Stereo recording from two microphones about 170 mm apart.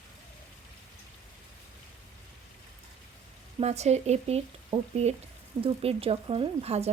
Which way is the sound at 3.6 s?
40° right (ahead or behind).